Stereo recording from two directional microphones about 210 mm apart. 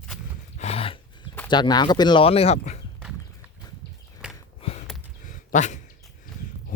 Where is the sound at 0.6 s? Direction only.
30° left (ahead or behind).